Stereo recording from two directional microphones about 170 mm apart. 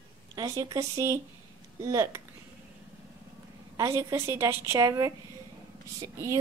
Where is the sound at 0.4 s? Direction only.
20° right (ahead or behind).